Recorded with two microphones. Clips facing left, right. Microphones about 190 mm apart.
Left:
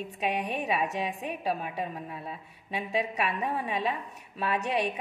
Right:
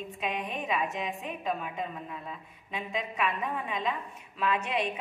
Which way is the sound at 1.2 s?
35° left (ahead or behind).